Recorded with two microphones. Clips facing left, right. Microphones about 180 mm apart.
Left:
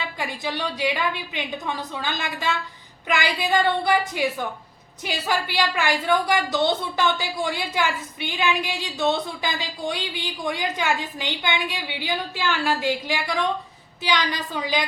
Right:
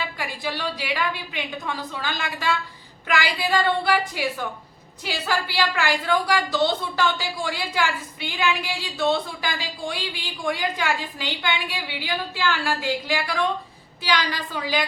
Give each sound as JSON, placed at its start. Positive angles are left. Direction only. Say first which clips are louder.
{"t": 0.2, "sound": "a woman's voice", "louder": "left 4 dB", "side_deg": 20}